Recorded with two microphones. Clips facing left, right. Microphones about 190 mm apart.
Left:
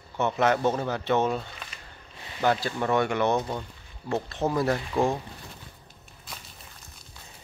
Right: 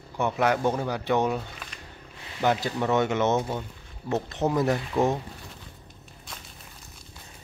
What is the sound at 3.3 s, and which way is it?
Speech, 10° right (ahead or behind).